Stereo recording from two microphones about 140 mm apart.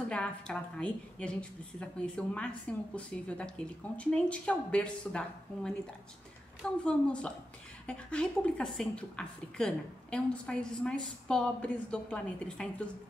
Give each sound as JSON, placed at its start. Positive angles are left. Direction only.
{"t": 0.1, "sound": "a woman's voice", "side_deg": 5}
{"t": 6.8, "sound": "a woman's voice", "side_deg": 10}